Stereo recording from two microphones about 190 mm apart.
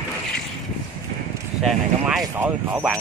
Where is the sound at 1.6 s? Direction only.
Centre (ahead or behind).